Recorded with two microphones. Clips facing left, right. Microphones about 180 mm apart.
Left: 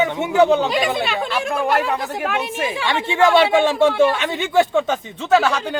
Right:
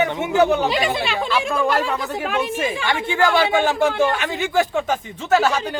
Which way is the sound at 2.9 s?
25° left (ahead or behind).